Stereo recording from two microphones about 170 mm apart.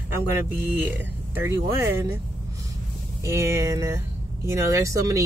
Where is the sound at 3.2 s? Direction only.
15° right (ahead or behind).